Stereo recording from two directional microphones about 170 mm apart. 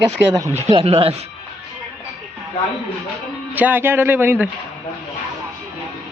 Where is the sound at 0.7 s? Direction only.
35° right (ahead or behind).